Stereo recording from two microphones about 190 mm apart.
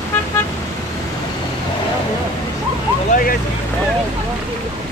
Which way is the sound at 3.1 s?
50° left (ahead or behind).